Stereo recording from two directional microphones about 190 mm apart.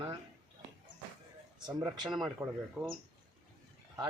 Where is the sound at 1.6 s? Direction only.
25° right (ahead or behind).